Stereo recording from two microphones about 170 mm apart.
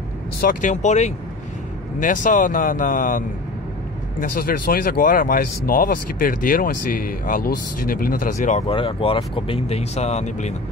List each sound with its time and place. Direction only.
0.4 s speech: 55° left (ahead or behind)